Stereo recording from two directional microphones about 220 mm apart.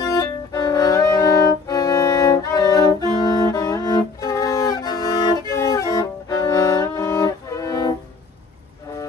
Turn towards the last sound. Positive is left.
turn(degrees=15)  # may be behind; listen again after turning